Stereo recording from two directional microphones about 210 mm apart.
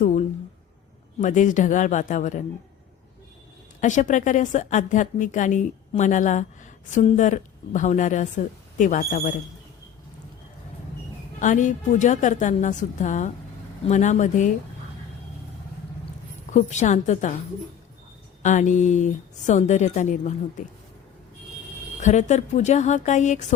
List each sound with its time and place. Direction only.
0.0 s a sound: 35° left (ahead or behind)
1.2 s a woman's voice: 35° left (ahead or behind)
3.8 s a woman's voice: 35° left (ahead or behind)
11.3 s a woman's voice: 35° left (ahead or behind)
16.5 s a woman's voice: 35° left (ahead or behind)
18.4 s a woman's voice: 35° left (ahead or behind)
22.0 s a woman's voice: 35° left (ahead or behind)